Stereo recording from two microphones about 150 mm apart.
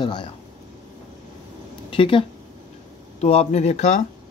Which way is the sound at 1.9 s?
35° left (ahead or behind).